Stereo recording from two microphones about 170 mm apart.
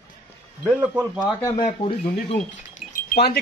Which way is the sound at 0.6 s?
10° right (ahead or behind).